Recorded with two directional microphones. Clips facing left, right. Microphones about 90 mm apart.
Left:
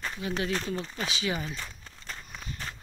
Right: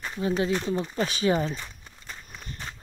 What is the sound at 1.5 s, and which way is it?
Walk, 15° right (ahead or behind).